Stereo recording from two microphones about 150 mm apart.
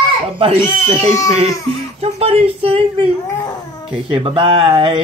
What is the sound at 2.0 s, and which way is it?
Speech, 40° right (ahead or behind).